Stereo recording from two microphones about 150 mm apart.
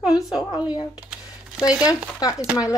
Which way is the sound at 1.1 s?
5° right (ahead or behind).